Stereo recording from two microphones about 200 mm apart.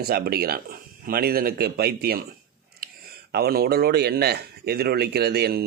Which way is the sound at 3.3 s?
50° right (ahead or behind).